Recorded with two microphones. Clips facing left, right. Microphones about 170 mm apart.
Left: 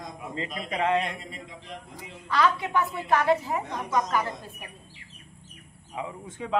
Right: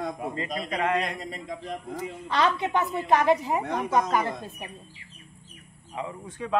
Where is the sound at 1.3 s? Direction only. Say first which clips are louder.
Right 6 dB; 45° right (ahead or behind).